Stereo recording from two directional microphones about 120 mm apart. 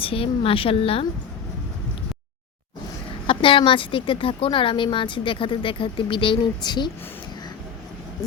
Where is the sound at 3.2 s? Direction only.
45° left (ahead or behind).